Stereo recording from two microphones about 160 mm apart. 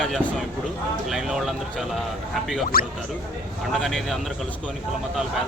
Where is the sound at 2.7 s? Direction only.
65° left (ahead or behind).